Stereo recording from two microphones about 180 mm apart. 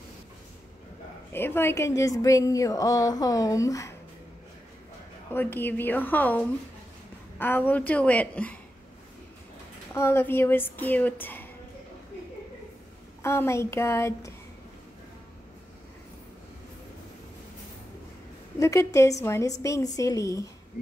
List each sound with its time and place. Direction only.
1.3 s a woman's voice: 10° left (ahead or behind)
5.3 s a woman's voice: 10° left (ahead or behind)
9.9 s a woman's voice: 15° left (ahead or behind)
13.2 s a woman's voice: 15° left (ahead or behind)
18.6 s a woman's voice: 15° left (ahead or behind)